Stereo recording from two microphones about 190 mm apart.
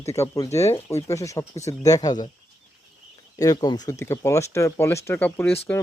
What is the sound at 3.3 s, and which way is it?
Speech, 20° left (ahead or behind).